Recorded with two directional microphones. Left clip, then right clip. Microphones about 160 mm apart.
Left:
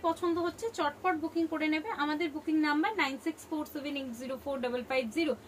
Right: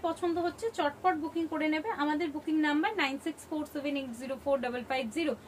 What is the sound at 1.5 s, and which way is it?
A woman's voice, 15° right (ahead or behind).